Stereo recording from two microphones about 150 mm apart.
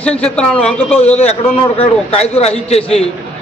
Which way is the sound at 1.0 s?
45° left (ahead or behind).